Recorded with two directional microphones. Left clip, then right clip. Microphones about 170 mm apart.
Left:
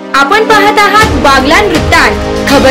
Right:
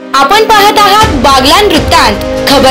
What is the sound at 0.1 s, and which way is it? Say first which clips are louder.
A woman's voice: right 1 dB; 5° right (ahead or behind).